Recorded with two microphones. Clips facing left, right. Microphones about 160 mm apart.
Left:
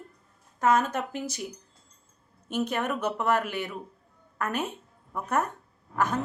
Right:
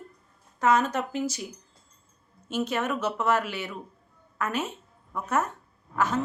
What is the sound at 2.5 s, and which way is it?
A woman's voice, 55° left (ahead or behind).